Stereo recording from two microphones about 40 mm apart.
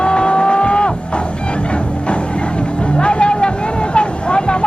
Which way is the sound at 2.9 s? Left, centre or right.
Left.